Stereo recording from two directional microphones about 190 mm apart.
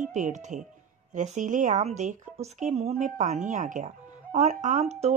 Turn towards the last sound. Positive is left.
turn(degrees=-35)  # may be behind; listen again after turning